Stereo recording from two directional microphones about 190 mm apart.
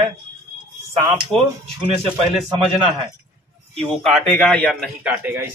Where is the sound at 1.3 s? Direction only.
Centre (ahead or behind).